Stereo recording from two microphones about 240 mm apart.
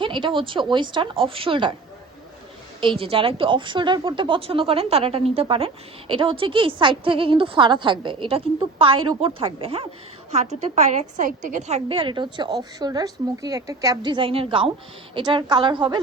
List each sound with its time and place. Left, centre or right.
0.0 s a woman's voice: centre
2.8 s a woman's voice: right